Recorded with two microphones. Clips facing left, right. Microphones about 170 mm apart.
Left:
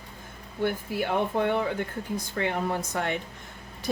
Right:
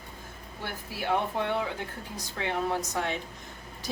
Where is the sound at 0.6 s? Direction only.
55° left (ahead or behind).